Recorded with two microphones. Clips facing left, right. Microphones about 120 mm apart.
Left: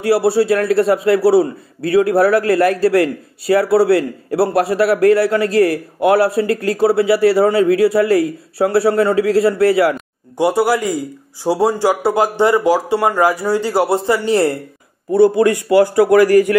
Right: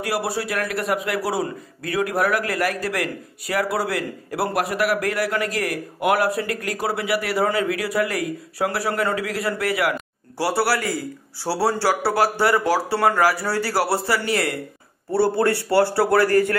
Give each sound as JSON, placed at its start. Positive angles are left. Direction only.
{"t": 0.0, "sound": "a man's voice", "side_deg": 30}
{"t": 15.0, "sound": "a man's voice", "side_deg": 20}